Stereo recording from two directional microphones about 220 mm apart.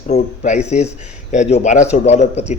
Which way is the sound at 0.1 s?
30° left (ahead or behind).